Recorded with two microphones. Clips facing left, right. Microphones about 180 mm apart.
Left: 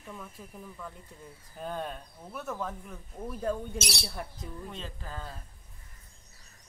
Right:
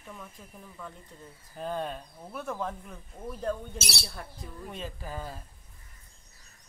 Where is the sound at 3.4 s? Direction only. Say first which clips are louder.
Left 1 dB; 10° left (ahead or behind).